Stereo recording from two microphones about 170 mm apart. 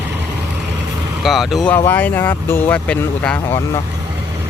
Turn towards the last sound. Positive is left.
turn(degrees=10)  # may be behind; listen again after turning